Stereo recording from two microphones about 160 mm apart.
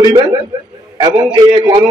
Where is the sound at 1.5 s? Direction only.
30° right (ahead or behind).